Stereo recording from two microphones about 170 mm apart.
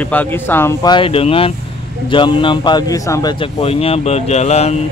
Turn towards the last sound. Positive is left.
turn(degrees=40)  # may be behind; listen again after turning